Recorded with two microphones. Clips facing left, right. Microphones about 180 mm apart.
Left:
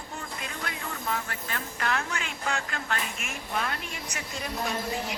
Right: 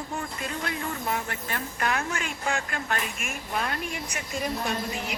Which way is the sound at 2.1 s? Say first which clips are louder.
Right 2 dB; 45° right (ahead or behind).